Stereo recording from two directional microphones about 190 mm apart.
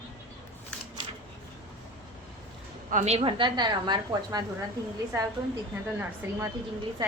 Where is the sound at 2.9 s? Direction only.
35° right (ahead or behind); by 4.4 s 20° right (ahead or behind).